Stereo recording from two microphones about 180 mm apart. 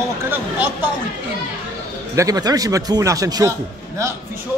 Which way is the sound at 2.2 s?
20° right (ahead or behind).